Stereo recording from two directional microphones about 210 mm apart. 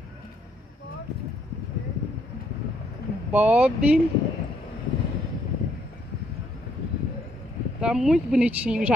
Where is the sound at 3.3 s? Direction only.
5° right (ahead or behind).